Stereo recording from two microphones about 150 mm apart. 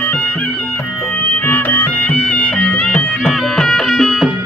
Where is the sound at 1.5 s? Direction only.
10° left (ahead or behind).